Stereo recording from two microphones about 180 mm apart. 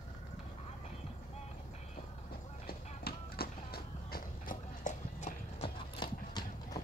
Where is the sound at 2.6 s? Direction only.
60° left (ahead or behind); by 5.7 s 40° left (ahead or behind).